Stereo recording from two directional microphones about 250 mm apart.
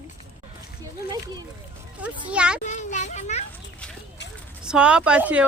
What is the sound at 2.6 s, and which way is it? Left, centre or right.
Children playing, left.